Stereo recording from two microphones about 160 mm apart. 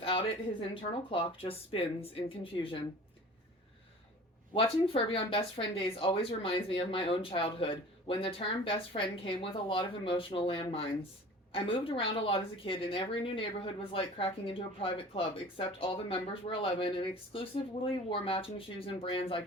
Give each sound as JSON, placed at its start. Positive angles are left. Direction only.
{"t": 0.0, "sound": "a sound", "side_deg": 35}
{"t": 0.7, "sound": "a woman's voice", "side_deg": 35}
{"t": 4.5, "sound": "a woman's voice", "side_deg": 35}